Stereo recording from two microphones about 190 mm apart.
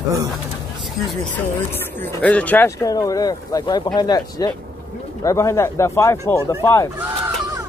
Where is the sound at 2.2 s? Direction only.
10° left (ahead or behind).